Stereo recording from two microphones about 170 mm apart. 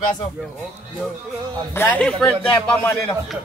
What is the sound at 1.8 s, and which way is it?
Speech, 10° left (ahead or behind).